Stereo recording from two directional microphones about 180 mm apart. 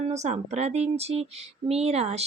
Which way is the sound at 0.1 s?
40° right (ahead or behind).